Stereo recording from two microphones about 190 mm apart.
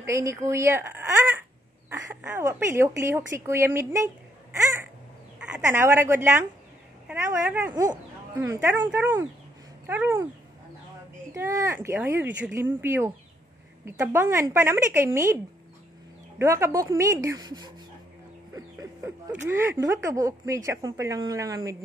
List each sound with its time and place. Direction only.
0.0 s speech: 15° right (ahead or behind)
11.3 s speech: 15° right (ahead or behind)
16.3 s speech: 15° right (ahead or behind)
18.8 s speech: 10° right (ahead or behind)